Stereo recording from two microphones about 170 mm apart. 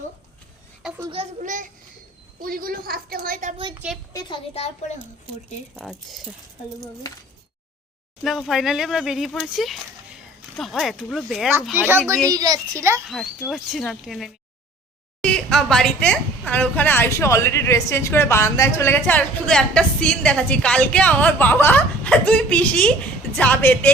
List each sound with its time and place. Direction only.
1.4 s a child's voice: 50° right (ahead or behind)
4.1 s a child's voice: 25° left (ahead or behind)
5.7 s speech: centre (ahead or behind)
8.2 s speech: centre (ahead or behind)
12.3 s a child's voice: 20° right (ahead or behind)
13.1 s a woman's voice: centre (ahead or behind)